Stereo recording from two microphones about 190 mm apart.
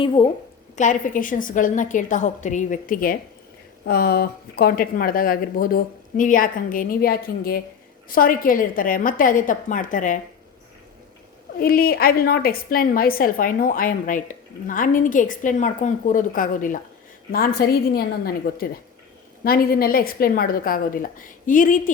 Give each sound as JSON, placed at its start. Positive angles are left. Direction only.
{"t": 0.0, "sound": "a woman's voice", "side_deg": 25}
{"t": 0.8, "sound": "a woman's voice", "side_deg": 45}
{"t": 11.6, "sound": "a woman's voice", "side_deg": 50}